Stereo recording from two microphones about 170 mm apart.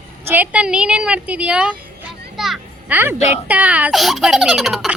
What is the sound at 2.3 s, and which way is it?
Children playing, centre (ahead or behind).